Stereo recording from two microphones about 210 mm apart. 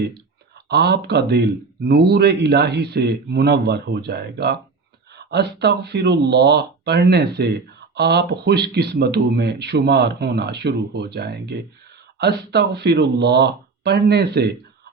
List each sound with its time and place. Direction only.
0.7 s speech: 50° right (ahead or behind)